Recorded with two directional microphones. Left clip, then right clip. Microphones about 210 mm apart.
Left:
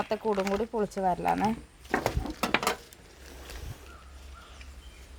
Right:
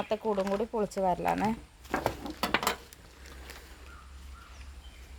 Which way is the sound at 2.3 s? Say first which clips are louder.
Left 2 dB; centre (ahead or behind).